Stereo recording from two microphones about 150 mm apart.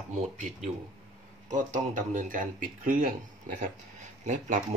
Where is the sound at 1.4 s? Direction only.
55° right (ahead or behind).